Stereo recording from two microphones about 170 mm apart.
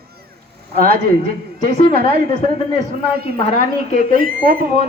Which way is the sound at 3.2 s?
65° right (ahead or behind).